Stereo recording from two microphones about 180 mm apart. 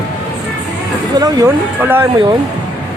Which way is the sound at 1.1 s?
20° right (ahead or behind).